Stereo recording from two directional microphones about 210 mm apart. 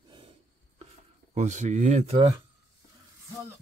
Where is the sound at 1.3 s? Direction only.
35° right (ahead or behind).